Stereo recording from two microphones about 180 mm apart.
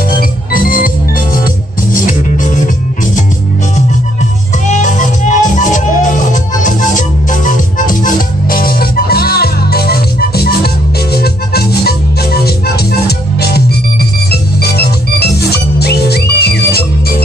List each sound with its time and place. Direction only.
0.1 s music: 50° left (ahead or behind)
4.6 s music: 45° left (ahead or behind); by 12.8 s 60° left (ahead or behind)
14.3 s music: 60° left (ahead or behind)